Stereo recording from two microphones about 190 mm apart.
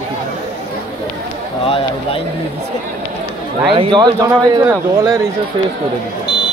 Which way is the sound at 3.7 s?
25° right (ahead or behind).